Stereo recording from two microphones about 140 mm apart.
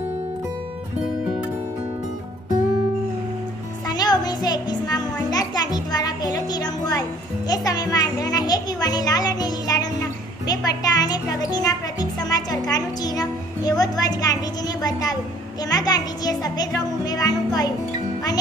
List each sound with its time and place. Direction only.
3.9 s music: 30° left (ahead or behind)
15.7 s a child's voice: 25° left (ahead or behind)